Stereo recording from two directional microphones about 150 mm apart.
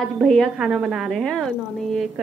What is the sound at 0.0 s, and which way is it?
A woman's voice, centre (ahead or behind).